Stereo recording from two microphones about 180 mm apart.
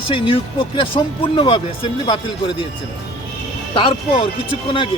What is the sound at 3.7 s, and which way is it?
Speech, 30° left (ahead or behind).